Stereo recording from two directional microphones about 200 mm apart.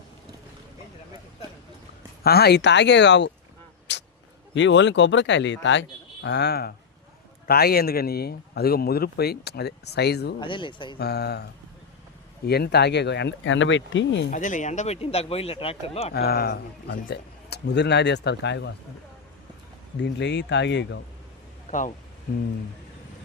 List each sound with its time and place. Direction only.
2.2 s speech: 50° left (ahead or behind)
3.9 s a sound: 60° left (ahead or behind)
4.5 s speech: 65° left (ahead or behind)
10.4 s speech: 25° left (ahead or behind)
10.9 s speech: 55° left (ahead or behind)
12.5 s speech: 55° left (ahead or behind)
14.3 s speech: 40° left (ahead or behind)
16.1 s speech: 50° left (ahead or behind)
20.0 s speech: 60° left (ahead or behind)
21.7 s speech: 40° left (ahead or behind)